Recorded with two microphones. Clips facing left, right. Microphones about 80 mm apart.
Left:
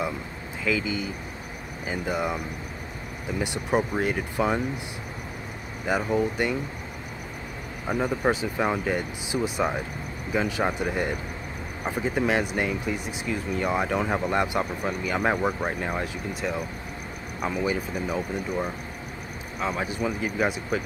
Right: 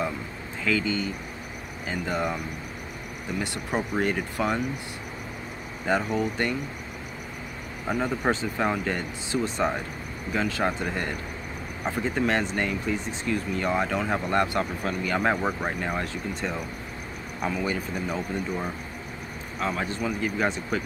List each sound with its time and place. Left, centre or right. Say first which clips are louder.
0.7 s speech: right 1 dB; centre
3.9 s speech: even; centre
6.0 s speech: left 2 dB; centre
7.9 s speech: left 1 dB; centre